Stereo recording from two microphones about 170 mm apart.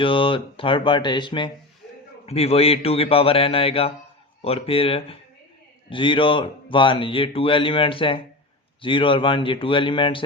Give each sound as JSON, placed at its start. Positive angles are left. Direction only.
{"t": 0.0, "sound": "speech", "side_deg": 30}